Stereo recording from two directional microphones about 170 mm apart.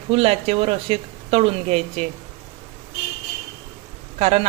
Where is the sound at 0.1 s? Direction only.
35° right (ahead or behind).